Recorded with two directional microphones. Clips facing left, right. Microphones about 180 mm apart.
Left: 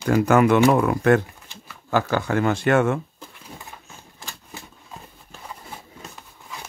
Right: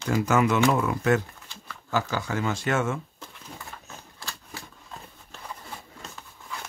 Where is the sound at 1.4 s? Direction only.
15° left (ahead or behind).